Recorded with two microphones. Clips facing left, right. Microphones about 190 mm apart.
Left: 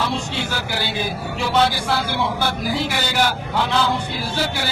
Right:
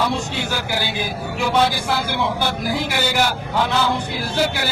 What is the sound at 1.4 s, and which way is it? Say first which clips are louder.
A man's voice: right 1 dB; 15° right (ahead or behind).